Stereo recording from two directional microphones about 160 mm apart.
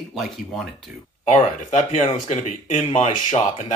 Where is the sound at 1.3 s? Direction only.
45° left (ahead or behind).